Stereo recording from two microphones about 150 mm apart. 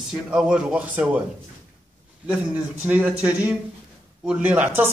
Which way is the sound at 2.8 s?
10° right (ahead or behind).